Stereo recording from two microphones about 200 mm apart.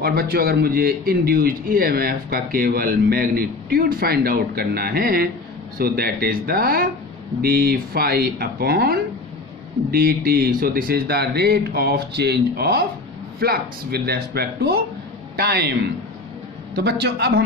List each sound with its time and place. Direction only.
0.0 s a man's voice: 50° right (ahead or behind)
16.7 s speech: 60° right (ahead or behind)